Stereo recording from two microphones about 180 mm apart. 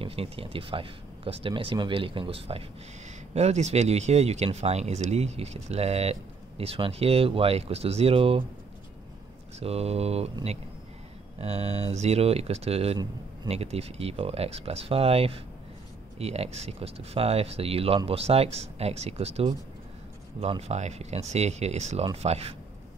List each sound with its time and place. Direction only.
0.0 s speech: 30° right (ahead or behind)
9.6 s speech: 35° right (ahead or behind)